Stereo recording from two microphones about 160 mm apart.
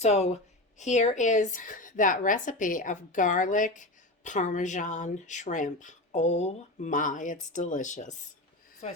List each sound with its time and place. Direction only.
0.0 s a woman's voice: 45° left (ahead or behind)